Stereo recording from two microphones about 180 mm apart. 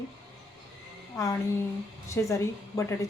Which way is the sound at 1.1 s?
15° left (ahead or behind).